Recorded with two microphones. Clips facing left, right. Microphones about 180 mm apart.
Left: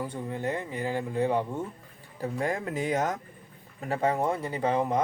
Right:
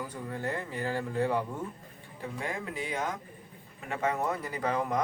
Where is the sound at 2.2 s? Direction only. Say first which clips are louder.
Left 6 dB; 40° left (ahead or behind).